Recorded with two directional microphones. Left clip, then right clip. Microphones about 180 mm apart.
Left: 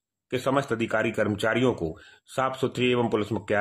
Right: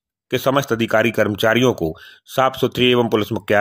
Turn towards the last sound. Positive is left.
turn(degrees=-30)  # may be behind; listen again after turning